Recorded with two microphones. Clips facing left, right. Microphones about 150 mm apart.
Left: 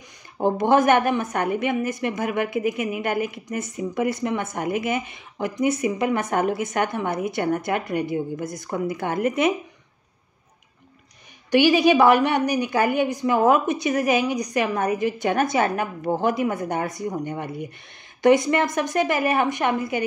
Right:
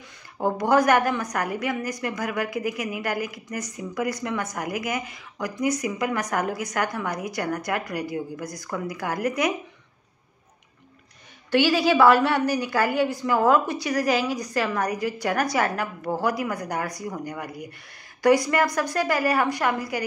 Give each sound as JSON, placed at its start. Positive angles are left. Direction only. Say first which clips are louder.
{"t": 0.4, "sound": "a woman's voice", "louder": "left 2 dB", "side_deg": 25}
{"t": 11.5, "sound": "a woman's voice", "louder": "left 3 dB", "side_deg": 20}